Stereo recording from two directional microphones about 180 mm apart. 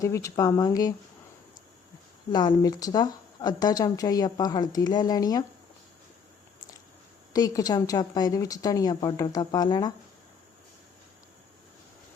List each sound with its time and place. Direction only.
0.0 s speech: 15° left (ahead or behind)
2.3 s a woman's voice: 25° left (ahead or behind)
7.3 s a woman's voice: 20° left (ahead or behind)